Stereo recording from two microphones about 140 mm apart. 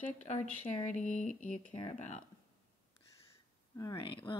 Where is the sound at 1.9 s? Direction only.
60° left (ahead or behind).